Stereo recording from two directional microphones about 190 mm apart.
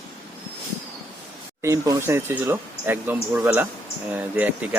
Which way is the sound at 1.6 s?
15° right (ahead or behind).